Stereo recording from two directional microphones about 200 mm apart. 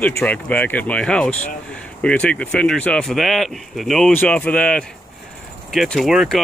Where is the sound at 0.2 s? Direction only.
5° left (ahead or behind).